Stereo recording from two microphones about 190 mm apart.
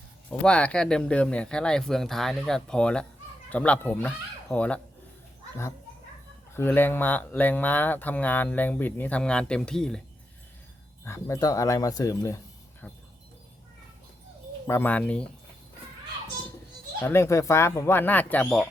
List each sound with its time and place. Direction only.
0.3 s speech: 5° left (ahead or behind)
6.5 s speech: 10° left (ahead or behind)
11.0 s speech: 15° left (ahead or behind)
14.7 s speech: 10° left (ahead or behind)
17.0 s speech: 15° left (ahead or behind)